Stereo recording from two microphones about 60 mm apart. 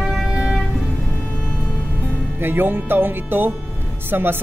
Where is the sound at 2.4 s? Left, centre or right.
Right.